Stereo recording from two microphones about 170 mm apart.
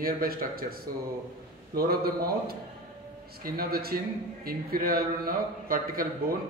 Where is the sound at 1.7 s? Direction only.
60° right (ahead or behind).